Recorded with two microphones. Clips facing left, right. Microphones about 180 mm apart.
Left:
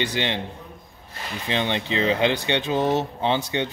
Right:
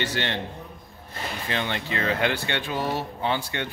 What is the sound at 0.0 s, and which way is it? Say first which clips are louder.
Speech: left 3 dB; 15° left (ahead or behind).